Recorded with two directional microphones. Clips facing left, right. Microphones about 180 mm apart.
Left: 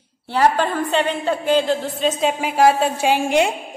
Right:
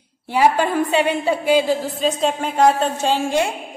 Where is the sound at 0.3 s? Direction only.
10° right (ahead or behind).